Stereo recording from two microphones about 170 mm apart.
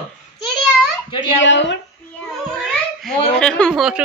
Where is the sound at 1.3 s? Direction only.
90° left.